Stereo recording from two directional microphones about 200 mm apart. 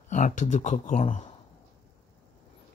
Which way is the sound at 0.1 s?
40° left (ahead or behind).